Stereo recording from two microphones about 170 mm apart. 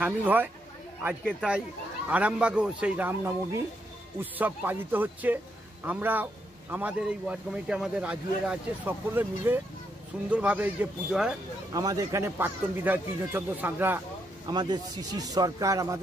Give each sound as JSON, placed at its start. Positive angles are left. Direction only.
{"t": 0.0, "sound": "a man's voice", "side_deg": -10}
{"t": 11.7, "sound": "a man's voice", "side_deg": -20}
{"t": 14.5, "sound": "speech", "side_deg": -25}